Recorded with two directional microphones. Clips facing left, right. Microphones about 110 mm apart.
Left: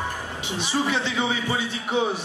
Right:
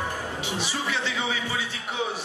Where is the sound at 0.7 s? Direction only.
25° left (ahead or behind).